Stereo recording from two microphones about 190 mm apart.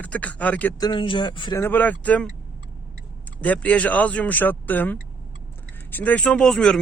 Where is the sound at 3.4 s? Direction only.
5° left (ahead or behind).